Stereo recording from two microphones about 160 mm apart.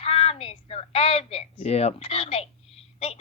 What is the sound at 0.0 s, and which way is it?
A woman's voice, 40° left (ahead or behind).